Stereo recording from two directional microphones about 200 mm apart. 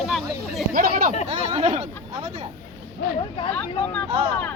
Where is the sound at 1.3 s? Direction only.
30° right (ahead or behind).